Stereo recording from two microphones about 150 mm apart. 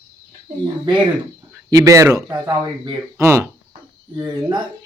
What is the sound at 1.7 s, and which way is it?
Speech, 20° right (ahead or behind).